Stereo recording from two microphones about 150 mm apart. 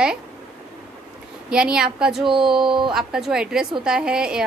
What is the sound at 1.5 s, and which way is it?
Speech, 5° right (ahead or behind).